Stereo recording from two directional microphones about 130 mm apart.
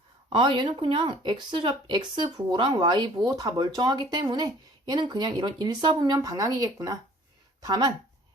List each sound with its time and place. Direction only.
0.3 s speech: 40° right (ahead or behind)